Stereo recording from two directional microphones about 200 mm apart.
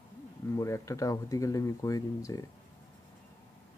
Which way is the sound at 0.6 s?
15° left (ahead or behind).